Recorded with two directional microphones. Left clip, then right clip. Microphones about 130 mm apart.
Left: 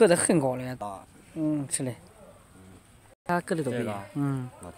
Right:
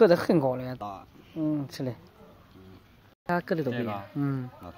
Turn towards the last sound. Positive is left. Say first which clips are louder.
# even
turn(degrees=20)  # may be behind; listen again after turning